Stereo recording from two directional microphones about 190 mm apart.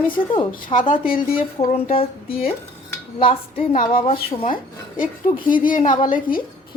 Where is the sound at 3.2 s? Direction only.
30° left (ahead or behind).